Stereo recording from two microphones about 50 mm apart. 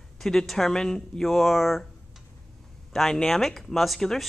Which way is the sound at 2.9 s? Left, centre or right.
Centre.